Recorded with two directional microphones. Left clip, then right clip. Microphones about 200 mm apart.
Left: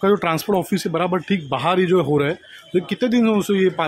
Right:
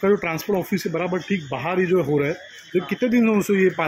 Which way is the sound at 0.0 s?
20° left (ahead or behind).